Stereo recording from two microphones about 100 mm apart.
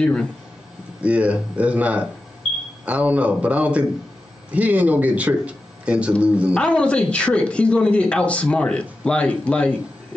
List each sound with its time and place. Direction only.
0.0 s speech: 10° left (ahead or behind)
1.0 s a man's voice: 15° right (ahead or behind)
6.6 s speech: 10° left (ahead or behind)